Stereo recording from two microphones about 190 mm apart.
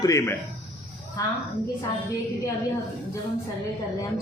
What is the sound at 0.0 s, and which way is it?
Speech, 15° left (ahead or behind).